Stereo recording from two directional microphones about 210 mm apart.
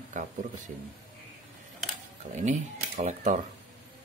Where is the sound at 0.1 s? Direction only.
40° right (ahead or behind).